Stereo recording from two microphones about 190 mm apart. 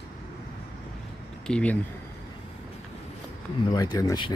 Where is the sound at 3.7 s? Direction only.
20° left (ahead or behind).